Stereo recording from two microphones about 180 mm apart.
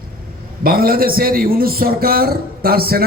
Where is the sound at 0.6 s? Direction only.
55° right (ahead or behind).